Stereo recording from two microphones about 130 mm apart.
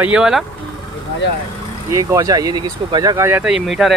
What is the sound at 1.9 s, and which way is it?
Speech, 25° right (ahead or behind).